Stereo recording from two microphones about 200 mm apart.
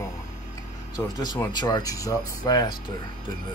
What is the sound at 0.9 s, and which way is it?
Speech, 20° left (ahead or behind).